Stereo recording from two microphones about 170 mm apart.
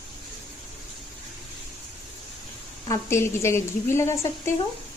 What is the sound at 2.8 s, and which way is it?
Speech, 15° left (ahead or behind).